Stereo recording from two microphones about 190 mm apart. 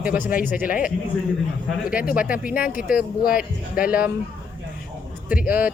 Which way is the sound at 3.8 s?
5° right (ahead or behind).